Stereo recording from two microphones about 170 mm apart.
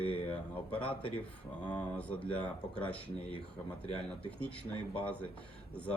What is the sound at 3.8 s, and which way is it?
Speech, 35° left (ahead or behind).